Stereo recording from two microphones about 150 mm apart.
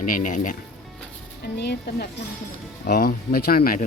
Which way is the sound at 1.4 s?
90° left.